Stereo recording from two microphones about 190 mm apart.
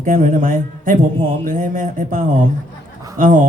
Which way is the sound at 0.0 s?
45° right (ahead or behind).